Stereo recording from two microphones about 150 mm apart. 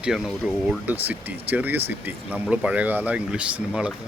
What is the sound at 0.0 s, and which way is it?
Speech, 5° right (ahead or behind).